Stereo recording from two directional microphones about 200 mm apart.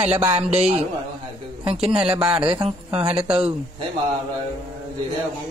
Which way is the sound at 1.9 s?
30° right (ahead or behind).